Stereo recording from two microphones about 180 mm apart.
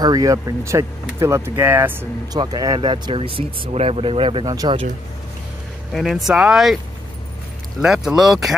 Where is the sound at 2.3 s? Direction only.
25° right (ahead or behind).